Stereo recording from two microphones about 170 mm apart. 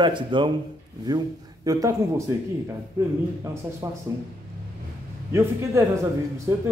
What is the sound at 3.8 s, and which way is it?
Speech, 20° right (ahead or behind).